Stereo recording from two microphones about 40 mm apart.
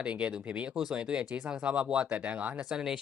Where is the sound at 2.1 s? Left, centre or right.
Right.